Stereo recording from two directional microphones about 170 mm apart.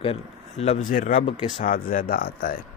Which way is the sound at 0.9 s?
55° left (ahead or behind).